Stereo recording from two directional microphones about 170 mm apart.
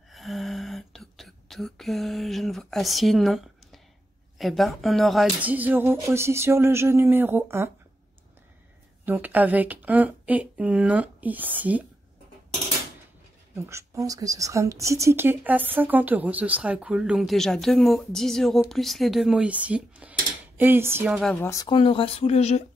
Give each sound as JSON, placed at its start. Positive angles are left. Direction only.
{"t": 0.1, "sound": "a sound", "side_deg": 0}
{"t": 4.4, "sound": "speech", "side_deg": 0}
{"t": 9.0, "sound": "speech", "side_deg": -10}
{"t": 13.6, "sound": "speech", "side_deg": -15}
{"t": 21.4, "sound": "speech", "side_deg": 15}
{"t": 21.6, "sound": "speech", "side_deg": 30}